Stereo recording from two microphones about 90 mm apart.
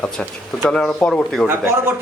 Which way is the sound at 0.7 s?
10° left (ahead or behind).